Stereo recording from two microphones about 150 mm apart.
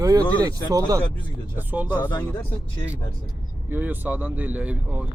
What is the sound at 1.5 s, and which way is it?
Speech, 10° right (ahead or behind).